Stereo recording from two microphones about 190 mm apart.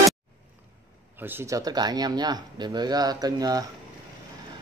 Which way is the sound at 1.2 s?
15° right (ahead or behind).